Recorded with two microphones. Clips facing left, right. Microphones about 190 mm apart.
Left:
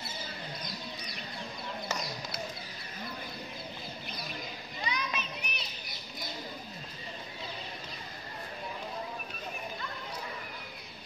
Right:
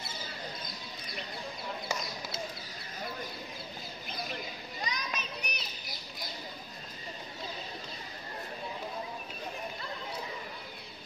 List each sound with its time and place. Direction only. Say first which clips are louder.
4.8 s children playing: left 3 dB; 40° right (ahead or behind)